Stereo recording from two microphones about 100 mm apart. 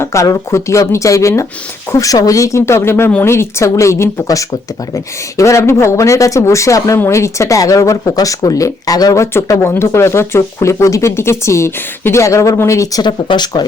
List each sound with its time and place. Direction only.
0.0 s speech: 30° left (ahead or behind); by 13.7 s 45° left (ahead or behind)